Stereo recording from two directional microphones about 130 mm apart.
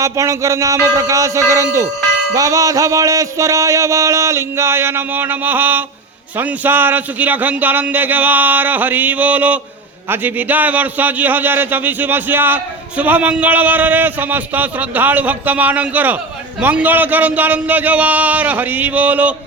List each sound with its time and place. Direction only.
0.0 s music: 25° right (ahead or behind)
6.3 s a man's voice: 10° right (ahead or behind)